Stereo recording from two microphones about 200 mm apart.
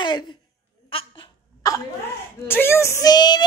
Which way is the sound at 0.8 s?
25° left (ahead or behind).